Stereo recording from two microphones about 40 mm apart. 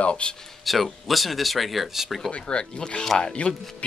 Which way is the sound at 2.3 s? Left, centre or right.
Left.